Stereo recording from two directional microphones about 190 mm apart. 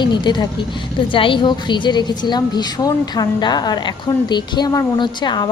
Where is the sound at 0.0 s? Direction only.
25° left (ahead or behind).